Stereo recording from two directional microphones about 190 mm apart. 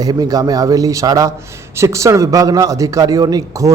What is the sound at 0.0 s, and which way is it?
A man's voice, 20° right (ahead or behind).